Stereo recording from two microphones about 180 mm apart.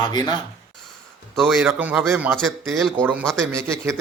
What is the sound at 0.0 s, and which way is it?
Speech, 25° left (ahead or behind).